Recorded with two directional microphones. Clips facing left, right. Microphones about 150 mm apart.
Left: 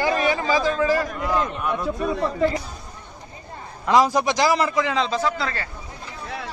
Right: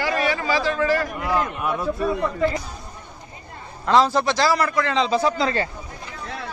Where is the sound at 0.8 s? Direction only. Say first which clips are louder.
Even; 15° left (ahead or behind).